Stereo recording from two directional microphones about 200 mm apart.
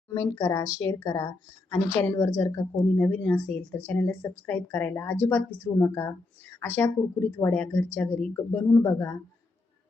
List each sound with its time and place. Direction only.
0.1 s speech: 15° left (ahead or behind)